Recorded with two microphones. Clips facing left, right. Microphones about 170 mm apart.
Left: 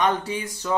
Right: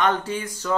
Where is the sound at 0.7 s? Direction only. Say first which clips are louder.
Even; 20° left (ahead or behind).